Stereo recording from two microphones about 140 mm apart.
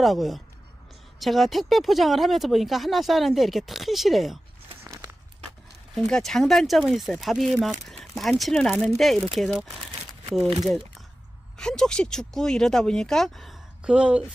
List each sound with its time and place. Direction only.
0.0 s speech: centre (ahead or behind)
4.8 s a sound: 20° right (ahead or behind)
5.9 s speech: 5° left (ahead or behind)
11.5 s speech: 5° left (ahead or behind)